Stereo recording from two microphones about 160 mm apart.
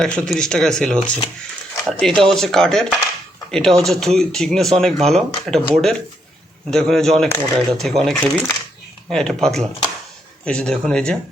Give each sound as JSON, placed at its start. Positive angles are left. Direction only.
{"t": 0.0, "sound": "speech", "side_deg": 5}
{"t": 7.3, "sound": "speech", "side_deg": 15}
{"t": 7.5, "sound": "speech", "side_deg": 5}